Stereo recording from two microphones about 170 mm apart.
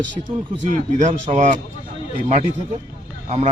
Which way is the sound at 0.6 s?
45° right (ahead or behind).